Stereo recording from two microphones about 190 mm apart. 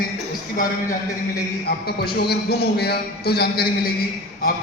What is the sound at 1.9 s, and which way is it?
A man's voice, 55° left (ahead or behind).